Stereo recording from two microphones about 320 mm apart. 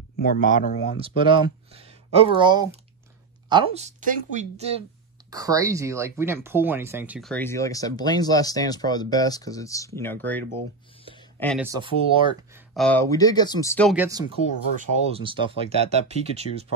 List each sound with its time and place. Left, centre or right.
0.2 s speech: left
0.9 s speech: centre
11.1 s a sound: centre
11.6 s speech: centre
12.7 s speech: centre